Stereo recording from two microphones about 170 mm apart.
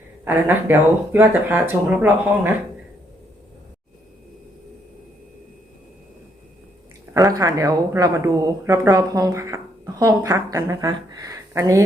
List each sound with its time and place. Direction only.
0.3 s speech: 10° right (ahead or behind)
7.1 s a woman's voice: 20° right (ahead or behind)